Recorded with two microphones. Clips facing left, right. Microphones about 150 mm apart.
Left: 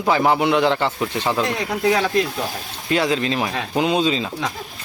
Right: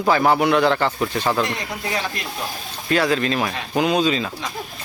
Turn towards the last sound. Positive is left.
turn(degrees=25)  # may be behind; listen again after turning